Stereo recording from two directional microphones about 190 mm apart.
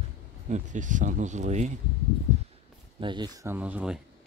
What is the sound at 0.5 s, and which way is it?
Speech, 40° right (ahead or behind).